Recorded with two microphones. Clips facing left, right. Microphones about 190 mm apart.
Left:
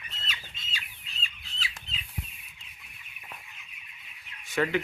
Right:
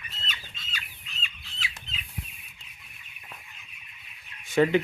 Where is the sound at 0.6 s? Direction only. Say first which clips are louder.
Right 1 dB; 25° left (ahead or behind).